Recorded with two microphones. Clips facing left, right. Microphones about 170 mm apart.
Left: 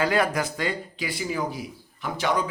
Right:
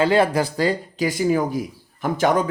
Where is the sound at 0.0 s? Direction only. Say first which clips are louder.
Right 6 dB; 30° right (ahead or behind).